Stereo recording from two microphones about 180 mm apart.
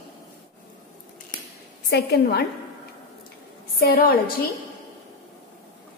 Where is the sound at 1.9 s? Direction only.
60° left (ahead or behind).